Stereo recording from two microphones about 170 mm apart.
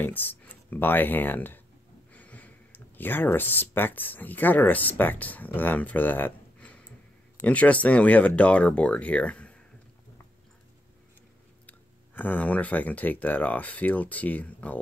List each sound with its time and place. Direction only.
0.0 s speech: 10° left (ahead or behind)
11.6 s speech: 10° left (ahead or behind)